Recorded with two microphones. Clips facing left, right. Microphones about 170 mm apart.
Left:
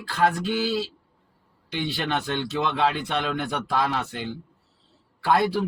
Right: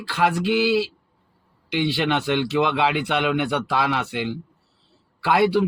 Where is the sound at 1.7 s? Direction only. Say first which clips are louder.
Right 5 dB; 90° right.